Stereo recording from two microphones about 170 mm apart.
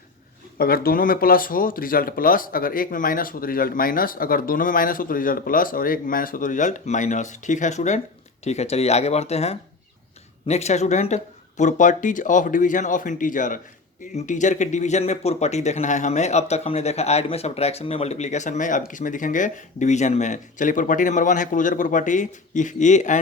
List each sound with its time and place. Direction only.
0.6 s speech: 60° left (ahead or behind); by 23.2 s 45° left (ahead or behind)